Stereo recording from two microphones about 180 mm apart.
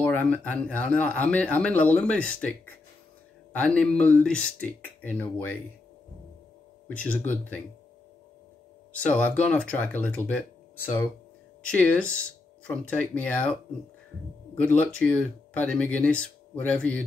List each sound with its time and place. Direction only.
0.0 s speech: 10° left (ahead or behind)
6.9 s speech: 10° left (ahead or behind)
8.9 s speech: 5° left (ahead or behind)
11.6 s speech: 10° left (ahead or behind)